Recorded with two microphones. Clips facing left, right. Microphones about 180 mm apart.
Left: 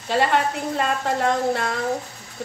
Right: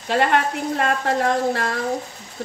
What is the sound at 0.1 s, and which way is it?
A woman's voice, 55° right (ahead or behind).